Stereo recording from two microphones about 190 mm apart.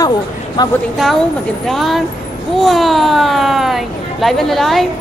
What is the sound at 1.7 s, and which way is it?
Speech, centre (ahead or behind).